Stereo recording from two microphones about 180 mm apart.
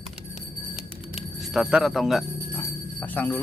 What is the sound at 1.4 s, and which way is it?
Speech, centre (ahead or behind).